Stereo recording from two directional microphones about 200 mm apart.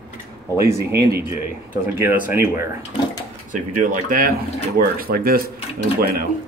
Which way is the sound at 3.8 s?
40° right (ahead or behind).